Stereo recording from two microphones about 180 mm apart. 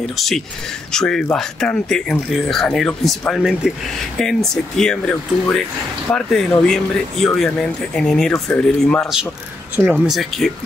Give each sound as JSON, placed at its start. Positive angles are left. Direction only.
{"t": 0.1, "sound": "speech", "side_deg": 0}